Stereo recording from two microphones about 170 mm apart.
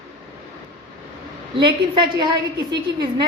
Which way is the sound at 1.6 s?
25° right (ahead or behind).